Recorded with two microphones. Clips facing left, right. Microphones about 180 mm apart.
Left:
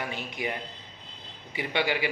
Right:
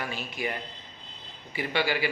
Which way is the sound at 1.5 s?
20° left (ahead or behind).